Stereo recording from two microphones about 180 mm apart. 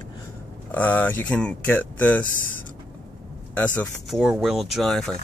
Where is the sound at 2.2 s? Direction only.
50° left (ahead or behind).